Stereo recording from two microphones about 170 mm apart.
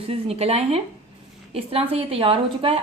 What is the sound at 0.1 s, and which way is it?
A woman's voice, 35° right (ahead or behind).